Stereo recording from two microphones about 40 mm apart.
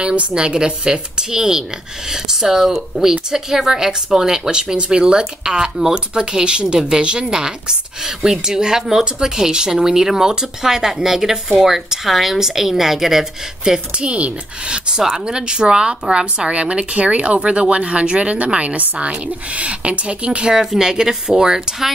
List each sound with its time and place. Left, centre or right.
0.0 s a woman's voice: right
0.3 s a woman's voice: right
13.9 s speech: right
20.5 s a woman's voice: centre